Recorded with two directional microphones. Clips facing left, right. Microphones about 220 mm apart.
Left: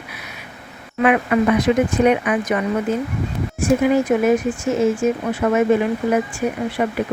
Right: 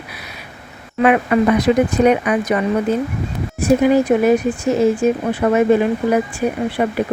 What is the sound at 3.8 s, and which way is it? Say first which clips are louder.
Speech: right 3 dB; 35° right (ahead or behind).